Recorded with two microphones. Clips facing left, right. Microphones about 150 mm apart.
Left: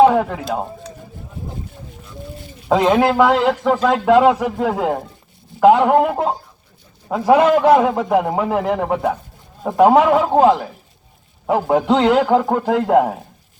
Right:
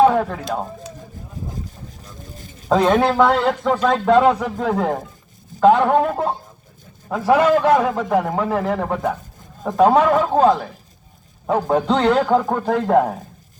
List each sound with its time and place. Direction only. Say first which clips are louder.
0.0 s speech: left 2 dB; 10° left (ahead or behind)
1.6 s a sound: left 1 dB; 40° right (ahead or behind)
2.6 s a man's voice: left 1 dB; 5° left (ahead or behind)